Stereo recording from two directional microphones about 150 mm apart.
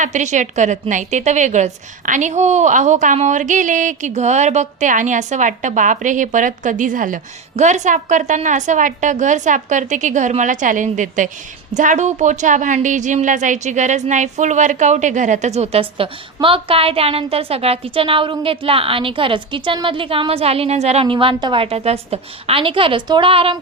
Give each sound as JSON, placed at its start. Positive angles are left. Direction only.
{"t": 0.0, "sound": "a woman's voice", "side_deg": -55}